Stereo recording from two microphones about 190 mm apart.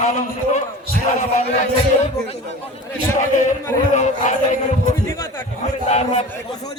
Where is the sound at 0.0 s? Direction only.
40° left (ahead or behind).